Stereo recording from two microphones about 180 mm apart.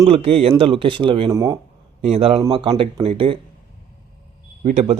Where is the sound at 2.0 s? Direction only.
35° right (ahead or behind).